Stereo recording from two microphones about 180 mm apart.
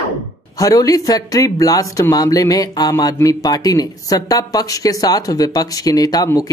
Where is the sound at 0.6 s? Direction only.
20° left (ahead or behind).